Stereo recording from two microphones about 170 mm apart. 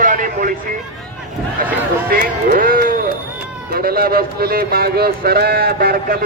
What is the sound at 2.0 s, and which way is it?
Speech, 55° right (ahead or behind).